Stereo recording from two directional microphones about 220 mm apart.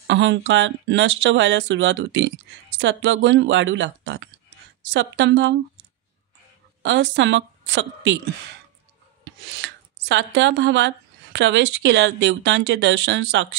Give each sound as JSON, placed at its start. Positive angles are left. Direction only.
{"t": 0.0, "sound": "a woman's voice", "side_deg": -55}
{"t": 6.8, "sound": "a woman's voice", "side_deg": -55}
{"t": 9.5, "sound": "speech", "side_deg": -55}